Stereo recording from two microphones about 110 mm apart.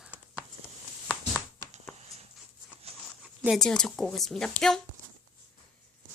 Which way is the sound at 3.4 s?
5° left (ahead or behind).